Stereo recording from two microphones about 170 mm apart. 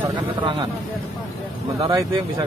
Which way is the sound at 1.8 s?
30° right (ahead or behind).